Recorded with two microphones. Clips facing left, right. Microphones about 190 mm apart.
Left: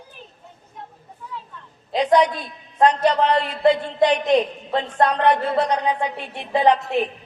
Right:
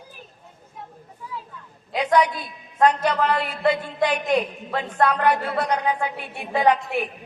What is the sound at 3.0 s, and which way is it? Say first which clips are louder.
Speech: left 4 dB; 30° left (ahead or behind).